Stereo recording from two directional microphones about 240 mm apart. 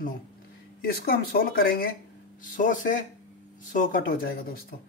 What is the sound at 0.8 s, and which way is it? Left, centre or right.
Speech, left.